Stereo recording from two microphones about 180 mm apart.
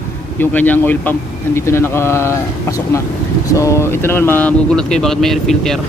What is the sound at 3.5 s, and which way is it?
Speech, 15° left (ahead or behind).